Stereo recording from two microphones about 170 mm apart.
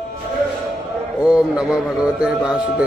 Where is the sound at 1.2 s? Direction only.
5° right (ahead or behind).